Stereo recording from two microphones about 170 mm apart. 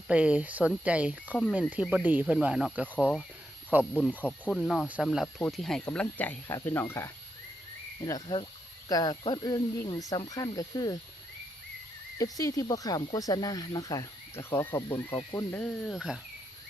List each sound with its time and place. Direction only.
0.1 s speech: 5° right (ahead or behind)
4.2 s speech: 10° left (ahead or behind)
4.5 s speech: centre (ahead or behind); by 10.9 s 20° left (ahead or behind)
12.1 s speech: 20° left (ahead or behind); by 16.2 s centre (ahead or behind)